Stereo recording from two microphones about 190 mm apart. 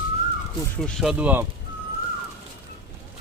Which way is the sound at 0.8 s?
Centre (ahead or behind).